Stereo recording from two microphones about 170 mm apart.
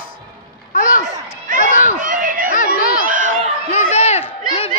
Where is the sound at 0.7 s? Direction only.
50° left (ahead or behind).